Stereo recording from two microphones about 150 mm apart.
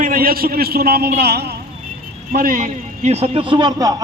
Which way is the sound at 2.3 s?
70° right (ahead or behind).